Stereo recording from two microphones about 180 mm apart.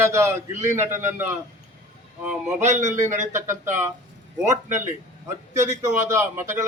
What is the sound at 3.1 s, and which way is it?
A man's voice, 15° right (ahead or behind).